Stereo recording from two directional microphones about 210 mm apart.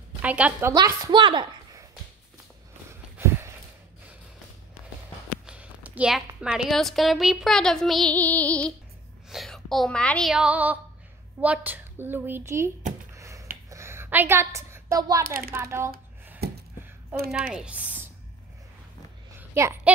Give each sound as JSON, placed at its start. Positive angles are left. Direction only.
{"t": 0.2, "sound": "a woman's voice", "side_deg": -5}
{"t": 3.2, "sound": "a sound", "side_deg": -10}
{"t": 5.5, "sound": "a woman's voice", "side_deg": -5}
{"t": 13.1, "sound": "a sound", "side_deg": -15}
{"t": 15.2, "sound": "speech", "side_deg": -45}
{"t": 15.5, "sound": "a child's voice", "side_deg": -10}
{"t": 16.4, "sound": "a sound", "side_deg": -50}
{"t": 17.6, "sound": "speech", "side_deg": -5}
{"t": 19.5, "sound": "a woman's voice", "side_deg": -10}